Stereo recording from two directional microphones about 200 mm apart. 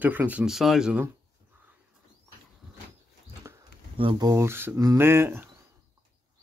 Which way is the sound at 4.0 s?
25° right (ahead or behind).